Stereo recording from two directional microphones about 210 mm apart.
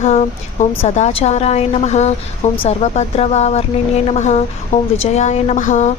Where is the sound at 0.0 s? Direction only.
35° left (ahead or behind).